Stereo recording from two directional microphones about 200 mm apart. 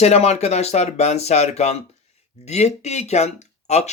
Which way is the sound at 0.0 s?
35° left (ahead or behind).